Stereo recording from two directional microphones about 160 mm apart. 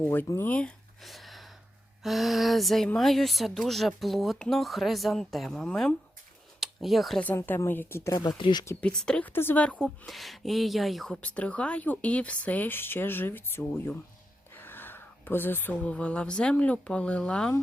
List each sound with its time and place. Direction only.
0.0 s a woman's voice: 10° left (ahead or behind); by 8.6 s 30° left (ahead or behind)
8.6 s a woman's voice: 15° left (ahead or behind)
8.9 s a woman's voice: 5° left (ahead or behind)